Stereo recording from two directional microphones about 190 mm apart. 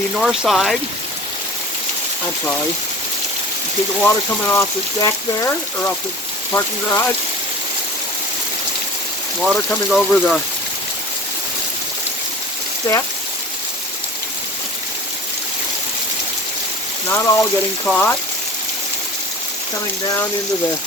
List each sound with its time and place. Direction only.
0.2 s speech: centre (ahead or behind)
4.0 s speech: 15° left (ahead or behind)
9.4 s speech: centre (ahead or behind)
17.1 s speech: 15° left (ahead or behind)